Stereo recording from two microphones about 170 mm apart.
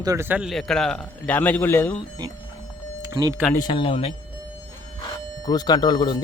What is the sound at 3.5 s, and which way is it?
Speech, 25° left (ahead or behind).